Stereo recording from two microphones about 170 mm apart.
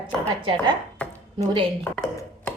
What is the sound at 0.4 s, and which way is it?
Speech, 30° right (ahead or behind).